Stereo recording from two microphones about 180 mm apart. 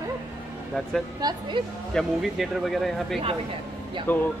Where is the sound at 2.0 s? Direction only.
Centre (ahead or behind).